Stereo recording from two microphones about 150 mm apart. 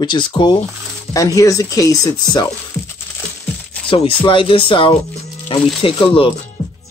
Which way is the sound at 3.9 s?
35° left (ahead or behind).